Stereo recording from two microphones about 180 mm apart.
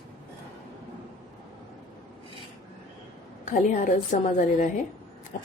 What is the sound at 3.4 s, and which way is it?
A woman's voice, 45° left (ahead or behind).